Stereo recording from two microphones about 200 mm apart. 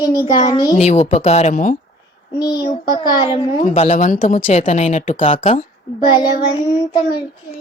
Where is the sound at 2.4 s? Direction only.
20° left (ahead or behind).